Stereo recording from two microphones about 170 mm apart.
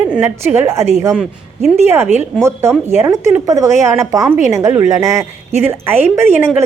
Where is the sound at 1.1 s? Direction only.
Centre (ahead or behind).